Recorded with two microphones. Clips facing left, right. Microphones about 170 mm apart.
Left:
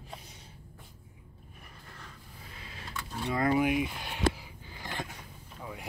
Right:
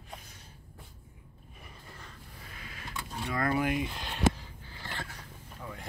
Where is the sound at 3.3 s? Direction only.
20° left (ahead or behind).